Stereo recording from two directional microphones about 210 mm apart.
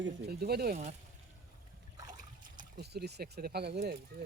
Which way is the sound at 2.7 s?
50° right (ahead or behind).